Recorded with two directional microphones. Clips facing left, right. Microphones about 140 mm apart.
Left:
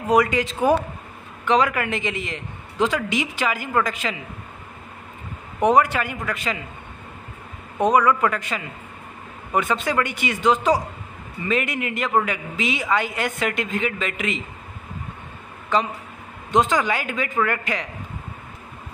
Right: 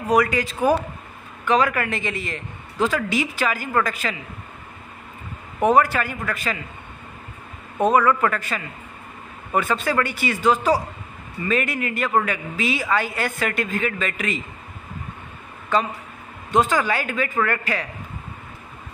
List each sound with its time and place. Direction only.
0.1 s a man's voice: 20° left (ahead or behind)
5.6 s a man's voice: 20° left (ahead or behind)
7.8 s a man's voice: 15° left (ahead or behind)
16.5 s a man's voice: 20° left (ahead or behind)